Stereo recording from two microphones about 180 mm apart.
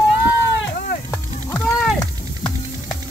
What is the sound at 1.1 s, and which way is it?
Music, 10° left (ahead or behind).